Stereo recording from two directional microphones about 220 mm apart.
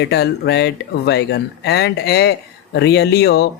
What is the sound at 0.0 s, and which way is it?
Speech, 50° left (ahead or behind).